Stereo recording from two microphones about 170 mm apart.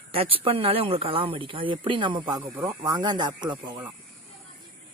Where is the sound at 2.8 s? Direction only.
25° right (ahead or behind).